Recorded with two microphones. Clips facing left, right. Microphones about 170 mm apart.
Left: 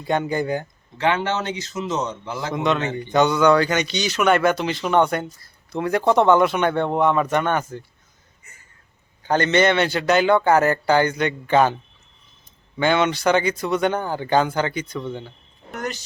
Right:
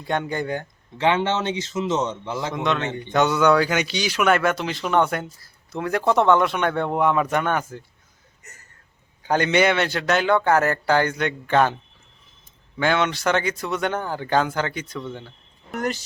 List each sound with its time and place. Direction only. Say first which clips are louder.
0.0 s speech: left 3 dB; 5° left (ahead or behind)
0.9 s a man's voice: right 1 dB; 25° right (ahead or behind)
2.6 s speech: left 5 dB; 5° left (ahead or behind)
9.2 s speech: left 1 dB; 10° right (ahead or behind)
12.8 s speech: left 2 dB; centre (ahead or behind)